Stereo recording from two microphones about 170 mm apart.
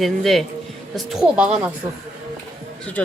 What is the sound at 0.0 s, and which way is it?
Speech, centre (ahead or behind).